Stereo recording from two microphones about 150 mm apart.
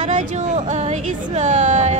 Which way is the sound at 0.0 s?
55° right (ahead or behind).